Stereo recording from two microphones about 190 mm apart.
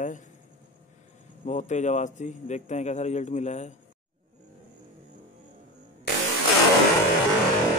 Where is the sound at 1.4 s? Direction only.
40° left (ahead or behind).